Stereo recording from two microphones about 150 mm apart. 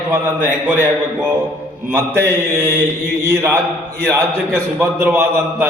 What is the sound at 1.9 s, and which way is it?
A man's voice, 15° right (ahead or behind).